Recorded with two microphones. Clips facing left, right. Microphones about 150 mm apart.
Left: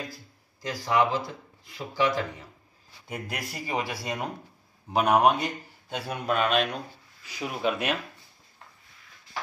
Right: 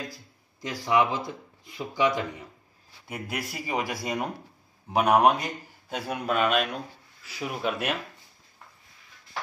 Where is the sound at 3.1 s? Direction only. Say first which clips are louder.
Right 1 dB; 5° right (ahead or behind).